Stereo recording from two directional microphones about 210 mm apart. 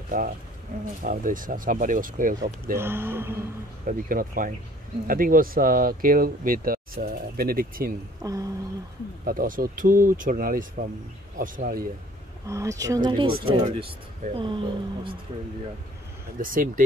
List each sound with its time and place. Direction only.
0.1 s speech: 40° right (ahead or behind)
2.8 s speech: 10° right (ahead or behind)
3.8 s speech: 40° right (ahead or behind)
8.2 s speech: 15° right (ahead or behind)
9.2 s speech: 40° right (ahead or behind)
12.4 s speech: 15° right (ahead or behind)
16.3 s speech: 40° right (ahead or behind)